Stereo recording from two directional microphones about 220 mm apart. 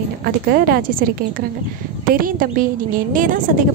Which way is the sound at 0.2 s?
45° right (ahead or behind).